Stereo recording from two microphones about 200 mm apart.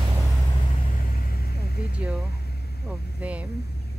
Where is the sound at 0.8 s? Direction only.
45° left (ahead or behind).